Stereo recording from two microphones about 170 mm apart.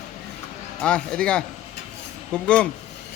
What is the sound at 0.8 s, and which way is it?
A man's voice, 5° left (ahead or behind).